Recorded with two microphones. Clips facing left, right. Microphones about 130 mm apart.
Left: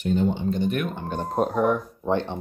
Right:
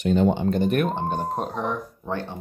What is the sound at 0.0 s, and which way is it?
Speech, 90° right.